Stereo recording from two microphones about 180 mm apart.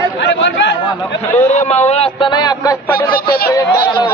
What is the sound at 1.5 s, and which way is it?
Speech, 40° left (ahead or behind).